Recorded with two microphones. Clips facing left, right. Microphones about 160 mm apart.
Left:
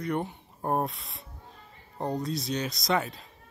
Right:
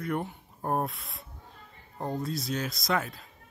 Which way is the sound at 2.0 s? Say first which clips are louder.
Left 2 dB; 20° left (ahead or behind).